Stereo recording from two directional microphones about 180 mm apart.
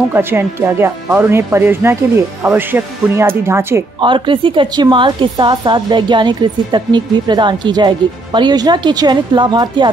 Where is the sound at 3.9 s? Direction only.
25° right (ahead or behind).